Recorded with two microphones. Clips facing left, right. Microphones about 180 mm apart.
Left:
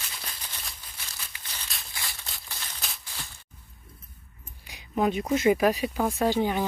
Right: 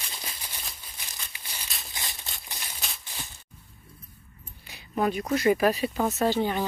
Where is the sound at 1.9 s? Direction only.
20° right (ahead or behind).